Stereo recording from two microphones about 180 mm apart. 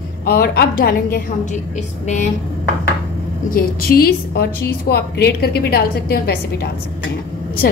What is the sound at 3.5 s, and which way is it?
A woman's voice, 55° left (ahead or behind).